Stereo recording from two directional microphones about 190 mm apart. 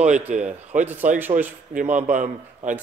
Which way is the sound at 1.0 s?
40° right (ahead or behind).